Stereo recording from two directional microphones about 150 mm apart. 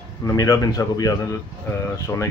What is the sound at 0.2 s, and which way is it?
Speech, 25° left (ahead or behind).